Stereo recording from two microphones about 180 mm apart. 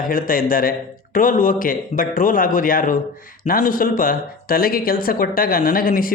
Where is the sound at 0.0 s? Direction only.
50° left (ahead or behind).